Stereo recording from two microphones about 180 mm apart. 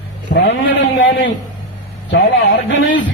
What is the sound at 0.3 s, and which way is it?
Speech, 75° left (ahead or behind).